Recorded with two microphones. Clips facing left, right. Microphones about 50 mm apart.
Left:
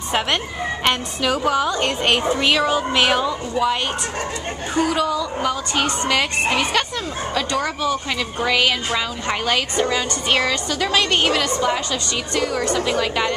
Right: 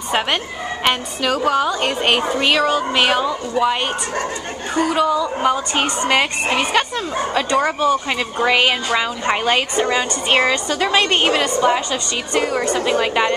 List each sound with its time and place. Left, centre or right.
0.8 s a woman's voice: centre
5.4 s a woman's voice: right